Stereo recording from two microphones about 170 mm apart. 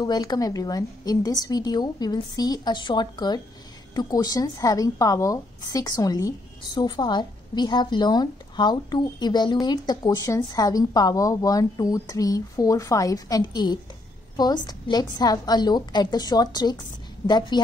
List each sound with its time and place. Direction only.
0.0 s a woman's voice: 25° left (ahead or behind)